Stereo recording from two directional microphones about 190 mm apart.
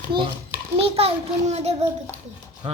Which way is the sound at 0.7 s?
30° right (ahead or behind).